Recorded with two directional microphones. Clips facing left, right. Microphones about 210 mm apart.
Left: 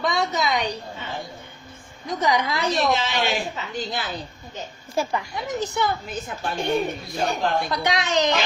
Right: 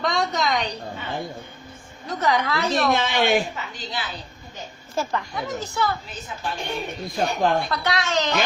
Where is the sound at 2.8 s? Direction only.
55° right (ahead or behind).